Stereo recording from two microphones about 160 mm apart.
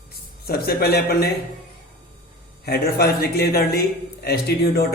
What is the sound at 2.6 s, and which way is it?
Speech, 80° left.